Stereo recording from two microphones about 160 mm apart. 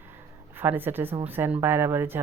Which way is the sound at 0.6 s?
10° right (ahead or behind).